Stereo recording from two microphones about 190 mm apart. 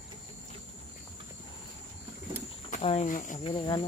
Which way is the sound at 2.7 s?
35° left (ahead or behind).